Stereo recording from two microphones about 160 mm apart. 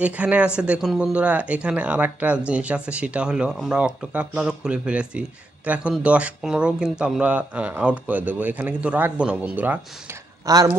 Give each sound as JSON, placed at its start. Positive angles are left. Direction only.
{"t": 0.0, "sound": "speech", "side_deg": -10}
{"t": 10.4, "sound": "speech", "side_deg": -20}